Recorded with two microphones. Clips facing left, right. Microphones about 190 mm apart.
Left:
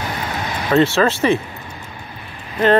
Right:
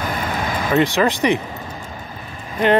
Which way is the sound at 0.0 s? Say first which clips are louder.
Right 2 dB; 50° right (ahead or behind).